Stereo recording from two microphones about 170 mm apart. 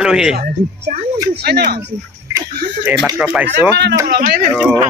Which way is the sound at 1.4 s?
70° right (ahead or behind).